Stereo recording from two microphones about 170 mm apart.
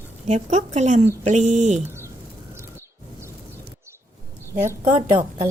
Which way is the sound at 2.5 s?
15° right (ahead or behind).